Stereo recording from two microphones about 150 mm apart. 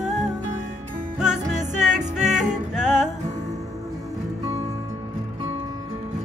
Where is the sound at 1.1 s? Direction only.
5° right (ahead or behind).